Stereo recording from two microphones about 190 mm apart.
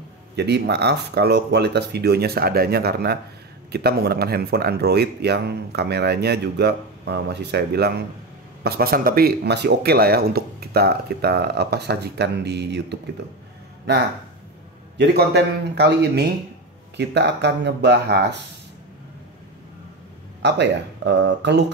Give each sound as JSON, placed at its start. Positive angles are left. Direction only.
{"t": 0.4, "sound": "speech", "side_deg": -60}
{"t": 15.0, "sound": "speech", "side_deg": -60}
{"t": 20.4, "sound": "speech", "side_deg": -65}